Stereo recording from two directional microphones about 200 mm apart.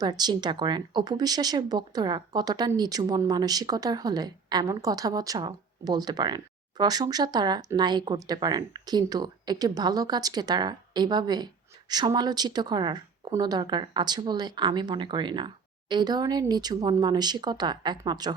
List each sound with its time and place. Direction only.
0.0 s speech: 20° right (ahead or behind)